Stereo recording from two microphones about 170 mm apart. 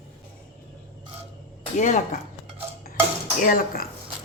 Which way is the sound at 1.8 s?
45° left (ahead or behind).